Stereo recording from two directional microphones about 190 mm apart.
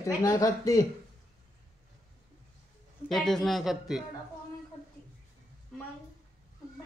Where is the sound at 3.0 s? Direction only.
Centre (ahead or behind).